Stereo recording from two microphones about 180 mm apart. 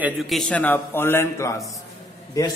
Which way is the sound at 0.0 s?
Centre (ahead or behind).